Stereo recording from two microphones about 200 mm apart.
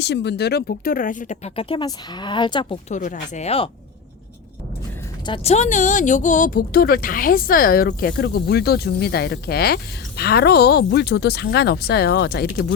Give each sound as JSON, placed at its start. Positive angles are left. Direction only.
{"t": 0.0, "sound": "speech", "side_deg": 60}
{"t": 2.9, "sound": "speech", "side_deg": 40}
{"t": 5.2, "sound": "speech", "side_deg": 30}